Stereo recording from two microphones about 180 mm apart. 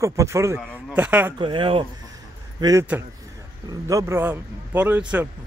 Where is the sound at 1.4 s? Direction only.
30° right (ahead or behind).